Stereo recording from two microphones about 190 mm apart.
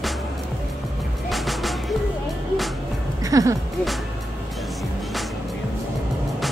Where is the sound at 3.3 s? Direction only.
20° right (ahead or behind).